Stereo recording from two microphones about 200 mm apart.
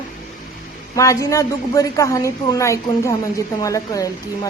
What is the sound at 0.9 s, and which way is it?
A woman's voice, 15° left (ahead or behind).